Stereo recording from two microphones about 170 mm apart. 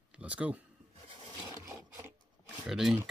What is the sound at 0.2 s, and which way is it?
Speech, 5° right (ahead or behind).